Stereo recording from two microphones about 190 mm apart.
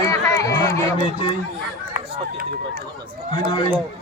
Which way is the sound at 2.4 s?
50° right (ahead or behind).